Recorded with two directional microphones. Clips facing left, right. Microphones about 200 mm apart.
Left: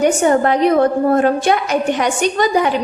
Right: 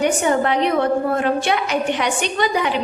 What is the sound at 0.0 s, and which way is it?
A woman's voice, 45° left (ahead or behind).